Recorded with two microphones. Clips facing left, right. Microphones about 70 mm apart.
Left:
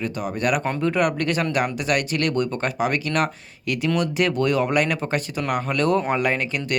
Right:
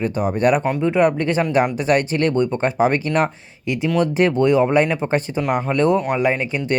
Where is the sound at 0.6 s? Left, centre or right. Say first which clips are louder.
Right 5 dB; centre.